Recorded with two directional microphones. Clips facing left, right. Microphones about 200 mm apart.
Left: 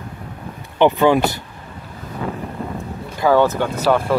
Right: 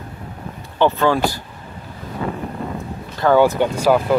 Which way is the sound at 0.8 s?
15° left (ahead or behind).